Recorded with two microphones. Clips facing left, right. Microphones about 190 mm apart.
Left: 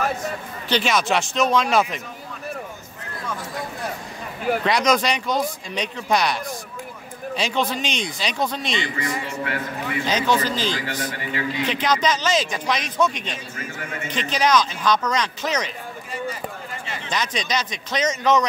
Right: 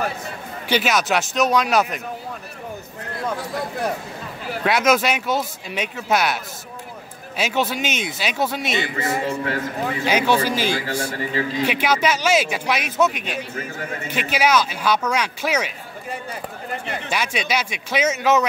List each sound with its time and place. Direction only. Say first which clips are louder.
0.7 s speech: right 1 dB; 5° right (ahead or behind)
4.6 s speech: right 4 dB; 5° right (ahead or behind)
9.2 s a man's voice: right 4 dB; 35° right (ahead or behind)
10.0 s speech: right 2 dB; 10° right (ahead or behind)
10.9 s a man's voice: right 3 dB; 30° right (ahead or behind)
11.6 s speech: right 1 dB; 10° right (ahead or behind)
16.1 s speech: left 1 dB; 60° right (ahead or behind)
17.1 s speech: right 1 dB; 10° right (ahead or behind)